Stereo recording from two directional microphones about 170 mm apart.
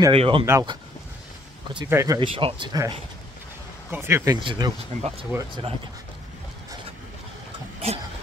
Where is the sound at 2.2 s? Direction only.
30° right (ahead or behind).